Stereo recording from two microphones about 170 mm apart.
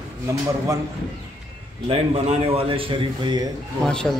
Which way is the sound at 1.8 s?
35° right (ahead or behind).